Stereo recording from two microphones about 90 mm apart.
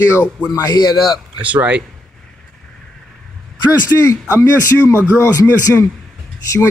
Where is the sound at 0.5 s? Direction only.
45° left (ahead or behind).